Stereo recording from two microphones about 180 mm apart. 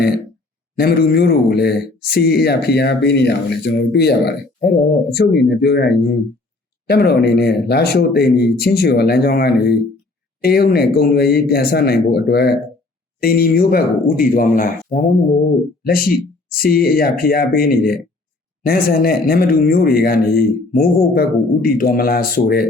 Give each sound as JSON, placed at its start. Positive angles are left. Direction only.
{"t": 0.8, "sound": "speech", "side_deg": 60}